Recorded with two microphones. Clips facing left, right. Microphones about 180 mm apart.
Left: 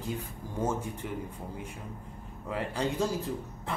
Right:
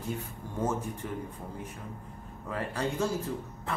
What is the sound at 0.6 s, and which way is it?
Speech, 10° left (ahead or behind).